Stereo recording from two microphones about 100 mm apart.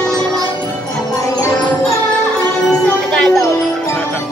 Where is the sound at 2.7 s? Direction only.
10° left (ahead or behind).